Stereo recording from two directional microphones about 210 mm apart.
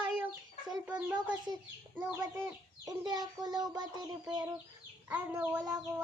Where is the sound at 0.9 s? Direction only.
5° right (ahead or behind).